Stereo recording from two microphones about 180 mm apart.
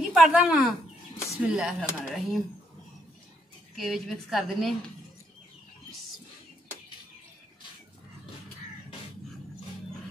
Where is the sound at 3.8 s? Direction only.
Centre (ahead or behind).